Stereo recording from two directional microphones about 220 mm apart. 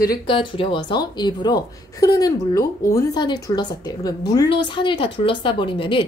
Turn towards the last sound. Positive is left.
turn(degrees=25)  # may be behind; listen again after turning